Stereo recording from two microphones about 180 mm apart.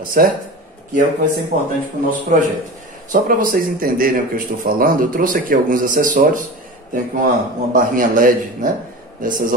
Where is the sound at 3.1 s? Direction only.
50° right (ahead or behind).